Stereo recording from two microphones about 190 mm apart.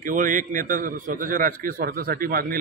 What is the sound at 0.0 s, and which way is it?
Speech, 45° right (ahead or behind).